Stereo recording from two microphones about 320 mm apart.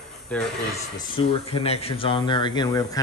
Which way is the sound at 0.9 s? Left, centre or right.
Centre.